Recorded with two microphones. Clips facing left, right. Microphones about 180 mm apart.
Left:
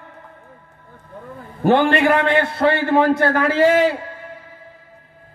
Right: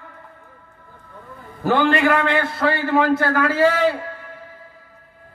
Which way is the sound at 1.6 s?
25° left (ahead or behind).